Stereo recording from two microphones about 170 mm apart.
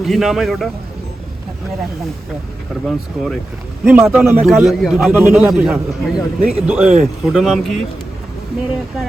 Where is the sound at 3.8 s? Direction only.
15° right (ahead or behind).